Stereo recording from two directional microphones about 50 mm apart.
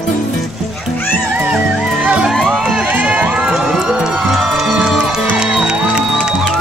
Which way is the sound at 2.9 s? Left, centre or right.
Right.